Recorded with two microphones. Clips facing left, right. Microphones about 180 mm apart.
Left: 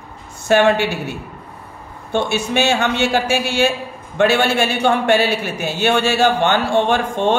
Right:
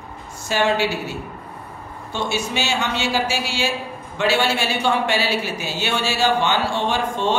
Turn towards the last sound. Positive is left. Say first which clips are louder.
# left 4 dB
turn(degrees=55)  # may be behind; listen again after turning